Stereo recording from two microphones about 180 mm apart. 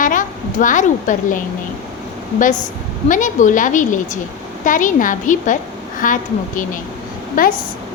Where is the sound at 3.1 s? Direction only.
45° left (ahead or behind).